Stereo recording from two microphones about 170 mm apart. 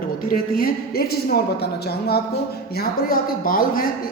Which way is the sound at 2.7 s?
60° left (ahead or behind).